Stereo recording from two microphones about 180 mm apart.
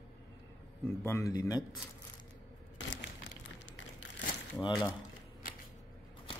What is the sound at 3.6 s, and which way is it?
Crushing, 80° left.